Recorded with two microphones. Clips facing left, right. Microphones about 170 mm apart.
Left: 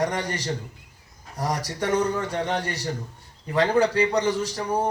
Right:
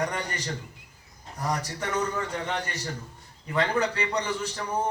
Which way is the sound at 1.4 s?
35° left (ahead or behind).